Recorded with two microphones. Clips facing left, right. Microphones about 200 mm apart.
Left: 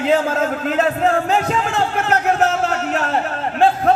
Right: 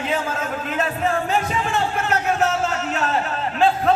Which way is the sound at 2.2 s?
65° left (ahead or behind).